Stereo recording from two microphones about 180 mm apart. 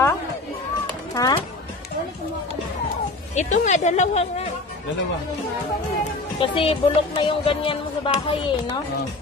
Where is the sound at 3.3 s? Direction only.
40° left (ahead or behind).